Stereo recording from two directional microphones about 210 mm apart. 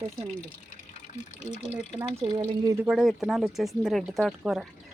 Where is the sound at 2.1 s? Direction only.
25° right (ahead or behind).